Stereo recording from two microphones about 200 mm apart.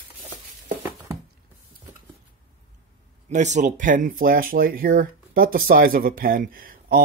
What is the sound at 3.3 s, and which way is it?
Speech, 35° right (ahead or behind).